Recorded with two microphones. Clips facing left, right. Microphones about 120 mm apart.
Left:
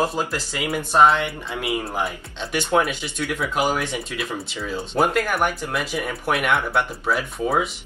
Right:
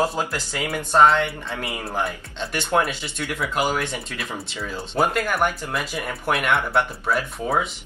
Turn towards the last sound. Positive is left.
turn(degrees=0)  # may be behind; listen again after turning